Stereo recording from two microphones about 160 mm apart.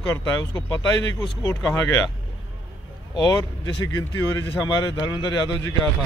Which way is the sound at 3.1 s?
25° left (ahead or behind).